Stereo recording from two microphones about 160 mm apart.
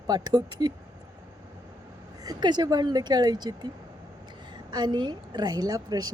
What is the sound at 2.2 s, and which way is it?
A woman's voice, 25° right (ahead or behind).